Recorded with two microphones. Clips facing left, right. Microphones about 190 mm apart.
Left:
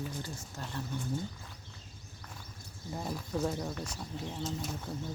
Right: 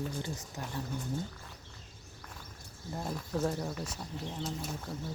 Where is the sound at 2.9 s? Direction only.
Centre (ahead or behind).